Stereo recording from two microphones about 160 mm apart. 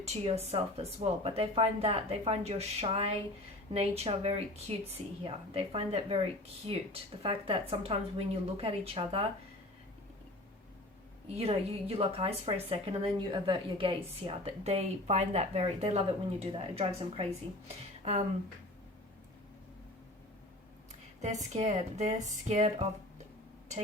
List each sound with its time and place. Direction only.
0.0 s a woman's voice: 40° right (ahead or behind)
11.3 s a woman's voice: 40° right (ahead or behind)
21.2 s speech: 45° right (ahead or behind)